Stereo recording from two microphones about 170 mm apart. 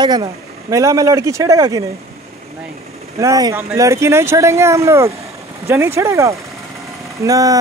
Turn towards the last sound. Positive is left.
turn(degrees=-20)  # may be behind; listen again after turning